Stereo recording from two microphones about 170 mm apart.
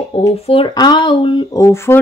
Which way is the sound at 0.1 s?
35° left (ahead or behind).